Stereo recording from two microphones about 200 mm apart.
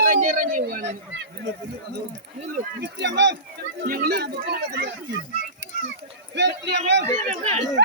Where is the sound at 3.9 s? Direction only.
50° right (ahead or behind).